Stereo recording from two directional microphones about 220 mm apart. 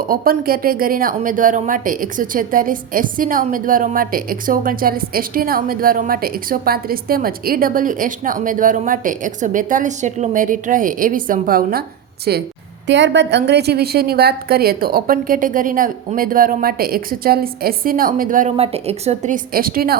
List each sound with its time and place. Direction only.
0.1 s a woman's voice: 40° right (ahead or behind)